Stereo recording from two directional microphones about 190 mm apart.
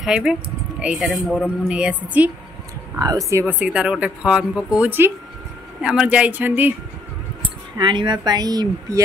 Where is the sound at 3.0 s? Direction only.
20° right (ahead or behind).